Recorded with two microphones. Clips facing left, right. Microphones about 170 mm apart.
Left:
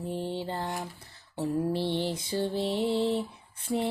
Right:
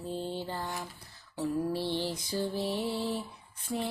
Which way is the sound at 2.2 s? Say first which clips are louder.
Left 3 dB; 60° left (ahead or behind).